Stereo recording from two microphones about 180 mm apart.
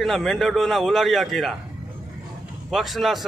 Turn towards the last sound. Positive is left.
turn(degrees=0)  # may be behind; listen again after turning